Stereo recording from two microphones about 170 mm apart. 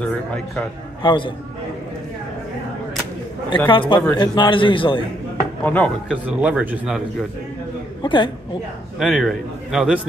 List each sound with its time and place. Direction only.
1.0 s a man's voice: 30° left (ahead or behind)
3.4 s a man's voice: 30° left (ahead or behind)
5.6 s speech: 10° left (ahead or behind)
6.0 s speech: 5° right (ahead or behind)
8.0 s a woman's voice: 30° left (ahead or behind)
9.0 s a man's voice: centre (ahead or behind)